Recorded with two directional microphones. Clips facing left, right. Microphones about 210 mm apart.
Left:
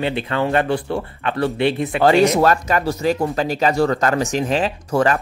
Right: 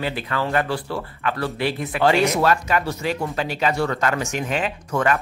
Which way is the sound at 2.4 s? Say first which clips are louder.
Left 3 dB; 40° left (ahead or behind).